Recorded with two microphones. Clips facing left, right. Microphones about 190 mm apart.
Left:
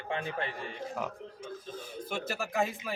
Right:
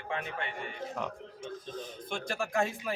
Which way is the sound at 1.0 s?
5° left (ahead or behind).